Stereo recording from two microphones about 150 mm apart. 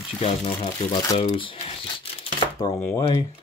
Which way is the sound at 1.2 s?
35° left (ahead or behind).